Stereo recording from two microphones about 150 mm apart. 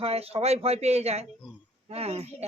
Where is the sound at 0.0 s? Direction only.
40° right (ahead or behind).